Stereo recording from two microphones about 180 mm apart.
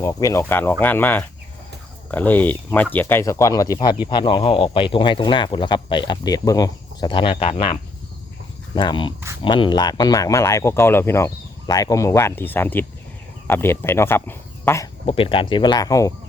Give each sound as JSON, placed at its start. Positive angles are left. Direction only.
{"t": 0.0, "sound": "speech", "side_deg": 20}
{"t": 15.0, "sound": "speech", "side_deg": 30}